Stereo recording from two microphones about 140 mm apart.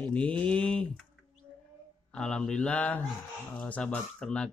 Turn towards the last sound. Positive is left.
turn(degrees=5)  # may be behind; listen again after turning